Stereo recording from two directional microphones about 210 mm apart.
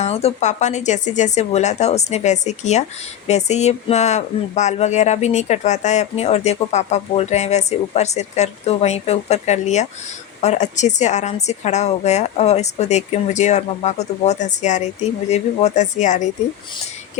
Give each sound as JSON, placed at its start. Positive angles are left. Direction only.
{"t": 0.0, "sound": "speech", "side_deg": 30}